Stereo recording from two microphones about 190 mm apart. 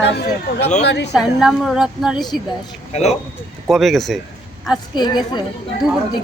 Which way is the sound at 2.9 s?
35° left (ahead or behind).